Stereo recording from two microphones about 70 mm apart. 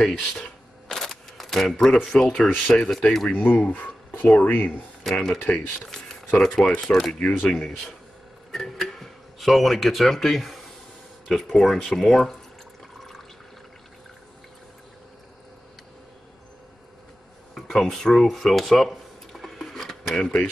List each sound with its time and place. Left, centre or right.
0.0 s camera: centre
2.1 s speech: centre
2.4 s speech: centre
2.9 s speech: centre
3.3 s speech: left
5.1 s speech: centre
17.6 s a sound: centre
20.2 s speech: centre